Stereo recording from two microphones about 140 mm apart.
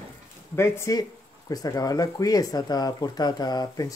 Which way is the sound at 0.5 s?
20° left (ahead or behind).